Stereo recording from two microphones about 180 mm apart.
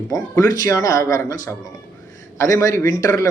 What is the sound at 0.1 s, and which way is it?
Speech, 20° left (ahead or behind).